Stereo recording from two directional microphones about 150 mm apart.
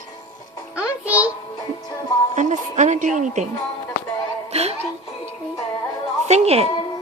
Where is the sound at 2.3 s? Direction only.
50° right (ahead or behind).